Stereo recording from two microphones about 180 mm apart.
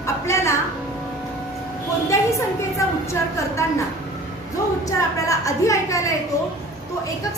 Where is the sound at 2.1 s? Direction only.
15° left (ahead or behind).